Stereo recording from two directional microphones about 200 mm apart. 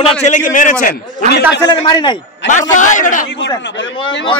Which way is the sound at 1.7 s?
20° left (ahead or behind).